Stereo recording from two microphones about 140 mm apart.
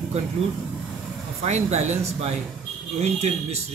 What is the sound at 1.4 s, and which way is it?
A man's voice, 50° right (ahead or behind).